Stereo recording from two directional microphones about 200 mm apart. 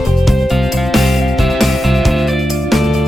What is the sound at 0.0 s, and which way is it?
Music, centre (ahead or behind).